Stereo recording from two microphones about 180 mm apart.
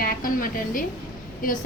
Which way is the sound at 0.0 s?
50° left (ahead or behind).